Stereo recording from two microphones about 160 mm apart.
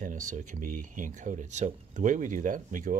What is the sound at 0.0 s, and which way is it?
Speech, 50° right (ahead or behind).